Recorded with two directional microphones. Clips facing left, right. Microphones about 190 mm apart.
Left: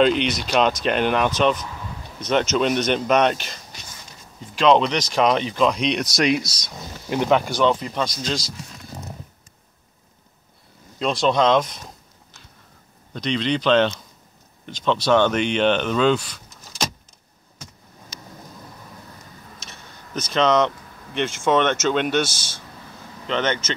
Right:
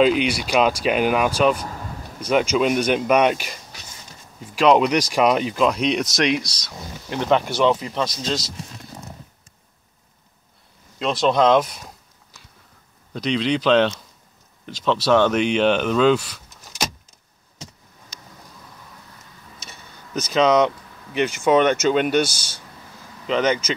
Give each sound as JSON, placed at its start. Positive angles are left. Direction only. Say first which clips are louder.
{"t": 0.0, "sound": "speech", "louder": "right 1 dB", "side_deg": -5}
{"t": 4.6, "sound": "speech", "louder": "right 1 dB", "side_deg": -10}
{"t": 6.6, "sound": "speech", "louder": "even", "side_deg": 10}
{"t": 11.0, "sound": "speech", "louder": "right 1 dB", "side_deg": 0}
{"t": 13.1, "sound": "speech", "louder": "right 1 dB", "side_deg": -5}
{"t": 20.3, "sound": "speech", "louder": "right 2 dB", "side_deg": -10}
{"t": 23.2, "sound": "speech", "louder": "right 3 dB", "side_deg": -5}